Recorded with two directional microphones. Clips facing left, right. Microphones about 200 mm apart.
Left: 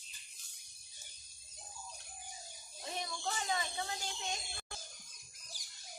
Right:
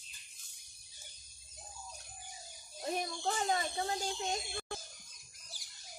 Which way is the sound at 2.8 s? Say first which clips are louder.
Right 5 dB; 45° right (ahead or behind).